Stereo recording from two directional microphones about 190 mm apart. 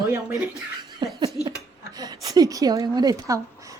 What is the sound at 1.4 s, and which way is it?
Speech, 25° left (ahead or behind).